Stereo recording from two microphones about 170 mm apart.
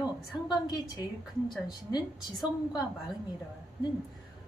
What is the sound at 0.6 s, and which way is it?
Speech, 20° left (ahead or behind).